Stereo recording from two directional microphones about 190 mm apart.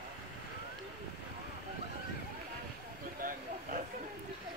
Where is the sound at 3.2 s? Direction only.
45° right (ahead or behind).